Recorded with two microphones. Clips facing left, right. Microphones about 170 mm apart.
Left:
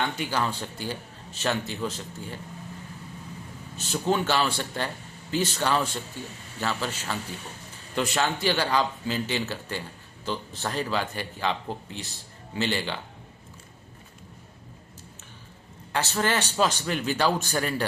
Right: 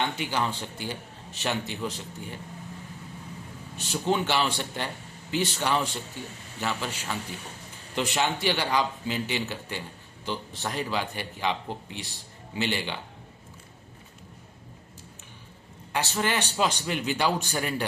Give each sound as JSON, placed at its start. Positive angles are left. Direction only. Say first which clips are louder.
{"t": 0.2, "sound": "a man's voice", "louder": "left 1 dB", "side_deg": -15}
{"t": 4.1, "sound": "a man's voice", "louder": "left 1 dB", "side_deg": -20}
{"t": 15.9, "sound": "a man's voice", "louder": "left 2 dB", "side_deg": -15}